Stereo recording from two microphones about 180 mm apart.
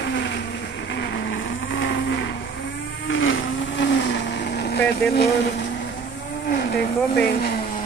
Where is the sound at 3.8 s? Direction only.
75° left (ahead or behind).